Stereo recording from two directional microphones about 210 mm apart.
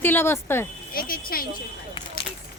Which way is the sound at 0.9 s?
45° left (ahead or behind).